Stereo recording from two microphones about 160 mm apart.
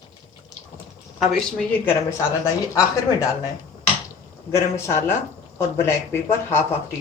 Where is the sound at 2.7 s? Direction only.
20° left (ahead or behind).